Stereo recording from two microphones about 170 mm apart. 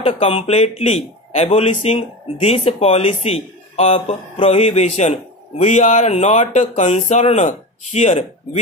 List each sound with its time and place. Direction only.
0.0 s a man's voice: 35° left (ahead or behind)